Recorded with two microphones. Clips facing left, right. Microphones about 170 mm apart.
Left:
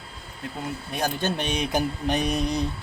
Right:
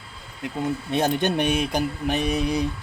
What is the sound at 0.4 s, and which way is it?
Speech, 25° right (ahead or behind).